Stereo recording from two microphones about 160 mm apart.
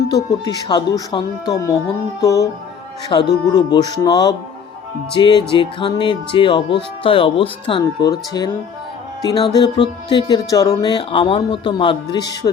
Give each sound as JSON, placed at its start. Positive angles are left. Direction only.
{"t": 0.3, "sound": "speech", "side_deg": 25}
{"t": 5.1, "sound": "music", "side_deg": 30}
{"t": 8.4, "sound": "speech", "side_deg": 25}